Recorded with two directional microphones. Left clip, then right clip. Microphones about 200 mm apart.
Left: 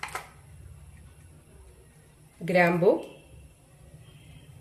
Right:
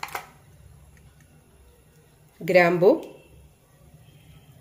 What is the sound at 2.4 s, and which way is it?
Speech, 45° right (ahead or behind).